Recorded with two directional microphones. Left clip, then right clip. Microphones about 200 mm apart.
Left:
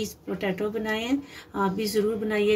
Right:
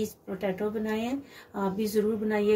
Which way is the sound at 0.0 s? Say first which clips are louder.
Left 2 dB; 45° left (ahead or behind).